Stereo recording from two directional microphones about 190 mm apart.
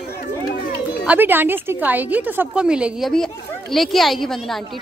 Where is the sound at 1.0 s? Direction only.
10° right (ahead or behind).